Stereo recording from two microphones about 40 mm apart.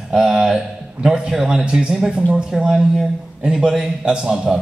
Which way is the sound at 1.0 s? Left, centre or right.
Right.